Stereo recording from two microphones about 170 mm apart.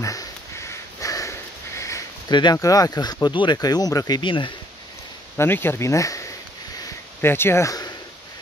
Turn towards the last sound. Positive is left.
turn(degrees=20)  # may be behind; listen again after turning